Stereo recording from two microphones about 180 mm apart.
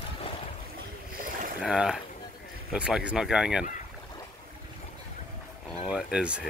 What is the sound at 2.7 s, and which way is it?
Speech, 5° right (ahead or behind).